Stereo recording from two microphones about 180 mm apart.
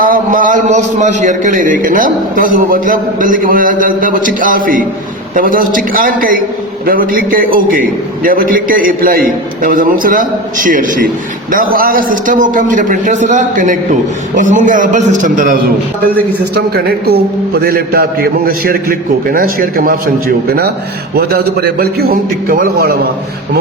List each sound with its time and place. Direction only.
0.0 s a man's voice: 50° right (ahead or behind)
16.6 s a man's voice: 60° right (ahead or behind)